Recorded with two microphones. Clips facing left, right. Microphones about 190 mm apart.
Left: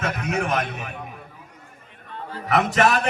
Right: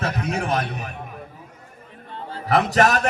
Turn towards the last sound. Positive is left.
turn(degrees=-40)  # may be behind; listen again after turning